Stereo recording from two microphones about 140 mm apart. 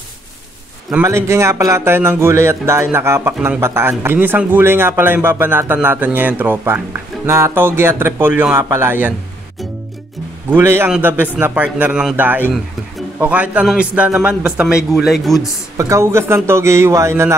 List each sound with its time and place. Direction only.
1.0 s speech: 20° right (ahead or behind)
10.5 s speech: 20° right (ahead or behind); by 15.5 s centre (ahead or behind)
15.8 s speech: 20° right (ahead or behind)